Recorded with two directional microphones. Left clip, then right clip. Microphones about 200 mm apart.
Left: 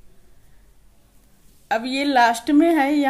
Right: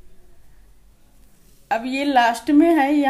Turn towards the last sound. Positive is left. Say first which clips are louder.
# right 1 dB
turn(degrees=15)  # may be behind; listen again after turning